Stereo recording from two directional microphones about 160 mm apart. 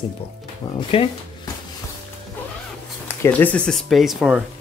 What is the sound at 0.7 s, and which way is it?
Speech, 30° left (ahead or behind).